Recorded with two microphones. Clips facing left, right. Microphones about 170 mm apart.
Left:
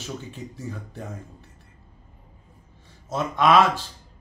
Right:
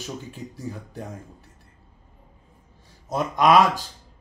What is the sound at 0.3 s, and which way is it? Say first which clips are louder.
Speech: right 1 dB; 10° right (ahead or behind).